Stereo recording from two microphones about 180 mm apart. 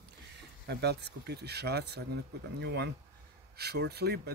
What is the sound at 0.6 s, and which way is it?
Speech, 65° right (ahead or behind).